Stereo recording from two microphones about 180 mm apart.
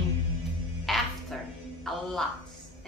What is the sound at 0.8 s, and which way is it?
Music, centre (ahead or behind).